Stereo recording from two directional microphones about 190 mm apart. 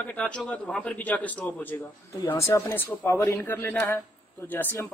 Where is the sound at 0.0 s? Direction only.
10° left (ahead or behind).